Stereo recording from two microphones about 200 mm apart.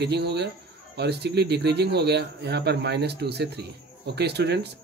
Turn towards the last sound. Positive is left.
turn(degrees=-55)  # may be behind; listen again after turning